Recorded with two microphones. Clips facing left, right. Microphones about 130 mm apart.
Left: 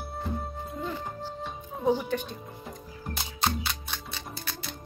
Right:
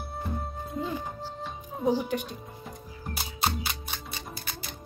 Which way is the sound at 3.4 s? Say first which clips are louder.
Left 1 dB; 5° right (ahead or behind).